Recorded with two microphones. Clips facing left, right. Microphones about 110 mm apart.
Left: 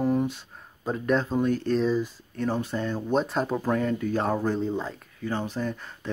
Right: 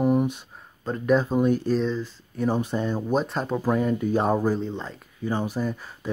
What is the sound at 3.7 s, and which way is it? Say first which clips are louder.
Speech: right 4 dB; 15° right (ahead or behind).